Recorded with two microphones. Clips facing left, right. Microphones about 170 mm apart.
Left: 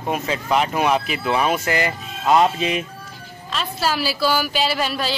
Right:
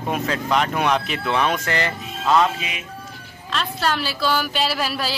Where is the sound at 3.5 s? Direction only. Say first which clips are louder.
Even; 5° left (ahead or behind).